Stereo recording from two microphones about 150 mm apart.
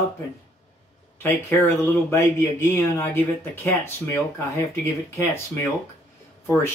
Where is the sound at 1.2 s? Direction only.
15° left (ahead or behind).